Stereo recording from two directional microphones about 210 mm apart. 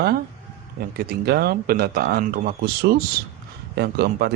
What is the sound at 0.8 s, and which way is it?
Speech, 45° right (ahead or behind).